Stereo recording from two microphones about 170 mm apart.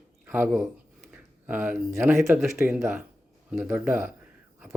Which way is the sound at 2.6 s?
10° right (ahead or behind).